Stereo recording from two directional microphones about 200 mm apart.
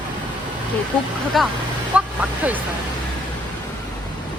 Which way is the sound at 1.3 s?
Centre (ahead or behind).